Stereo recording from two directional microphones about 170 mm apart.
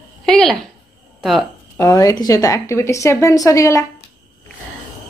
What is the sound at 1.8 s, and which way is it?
A woman's voice, 20° left (ahead or behind).